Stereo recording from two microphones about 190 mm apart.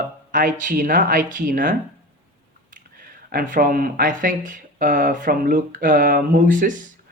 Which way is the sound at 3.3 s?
50° right (ahead or behind).